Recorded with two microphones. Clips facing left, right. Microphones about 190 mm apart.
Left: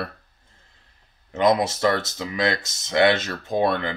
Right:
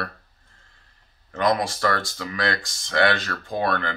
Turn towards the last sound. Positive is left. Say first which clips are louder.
# left 3 dB
turn(degrees=20)  # may be behind; listen again after turning